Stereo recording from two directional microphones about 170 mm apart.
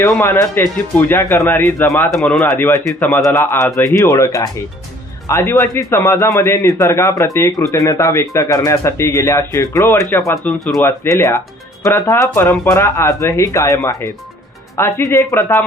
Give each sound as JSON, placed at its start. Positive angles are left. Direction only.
{"t": 0.0, "sound": "speech", "side_deg": 15}
{"t": 2.0, "sound": "speech", "side_deg": 0}
{"t": 10.3, "sound": "speech", "side_deg": 0}
{"t": 10.8, "sound": "speech", "side_deg": 15}